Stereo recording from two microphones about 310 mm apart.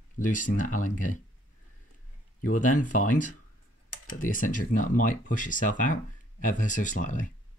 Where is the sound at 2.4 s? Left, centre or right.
Left.